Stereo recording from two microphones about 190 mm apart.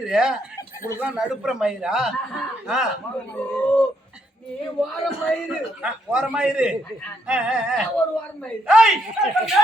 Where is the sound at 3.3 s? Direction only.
5° left (ahead or behind).